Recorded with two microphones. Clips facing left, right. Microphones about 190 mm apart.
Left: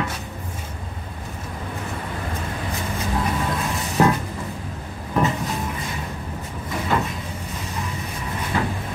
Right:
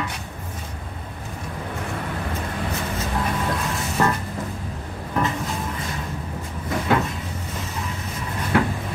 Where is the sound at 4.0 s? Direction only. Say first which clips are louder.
Left 4 dB; 10° left (ahead or behind).